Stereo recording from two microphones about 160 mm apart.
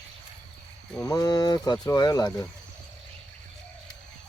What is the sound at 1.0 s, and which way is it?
Speech, 20° left (ahead or behind).